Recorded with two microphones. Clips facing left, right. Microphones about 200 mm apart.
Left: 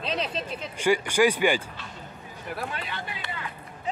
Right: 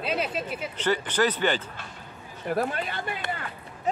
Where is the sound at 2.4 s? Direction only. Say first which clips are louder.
Right 7 dB; 45° right (ahead or behind).